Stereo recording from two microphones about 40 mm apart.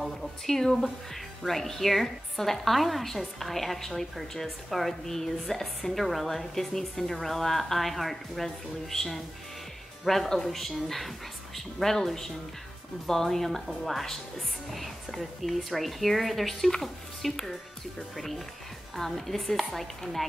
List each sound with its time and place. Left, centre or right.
0.0 s a woman's voice: centre